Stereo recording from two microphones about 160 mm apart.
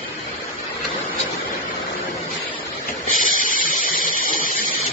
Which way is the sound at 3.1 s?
55° left (ahead or behind).